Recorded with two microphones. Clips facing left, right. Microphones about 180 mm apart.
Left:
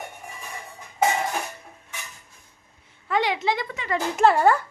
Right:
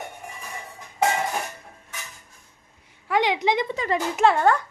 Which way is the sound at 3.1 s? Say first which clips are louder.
Right 2 dB; 15° right (ahead or behind).